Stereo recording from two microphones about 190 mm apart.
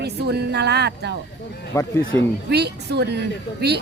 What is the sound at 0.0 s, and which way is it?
Speech, 60° right (ahead or behind).